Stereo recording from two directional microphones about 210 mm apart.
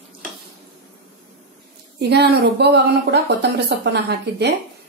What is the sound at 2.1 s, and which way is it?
A woman's voice, 50° right (ahead or behind).